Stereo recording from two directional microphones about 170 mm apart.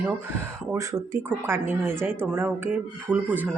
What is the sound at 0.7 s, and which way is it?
Speech, 20° right (ahead or behind).